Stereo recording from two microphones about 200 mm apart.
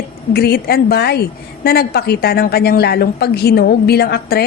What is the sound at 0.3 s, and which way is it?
Speech, 50° left (ahead or behind).